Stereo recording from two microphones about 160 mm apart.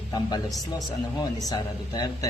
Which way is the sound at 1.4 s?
25° left (ahead or behind).